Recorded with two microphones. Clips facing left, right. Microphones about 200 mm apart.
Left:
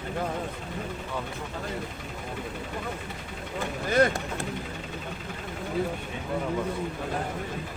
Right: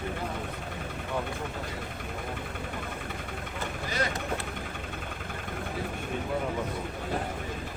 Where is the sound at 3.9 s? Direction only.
50° left (ahead or behind).